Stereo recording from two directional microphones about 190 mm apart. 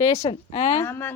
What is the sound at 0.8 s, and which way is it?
Speech, 10° left (ahead or behind).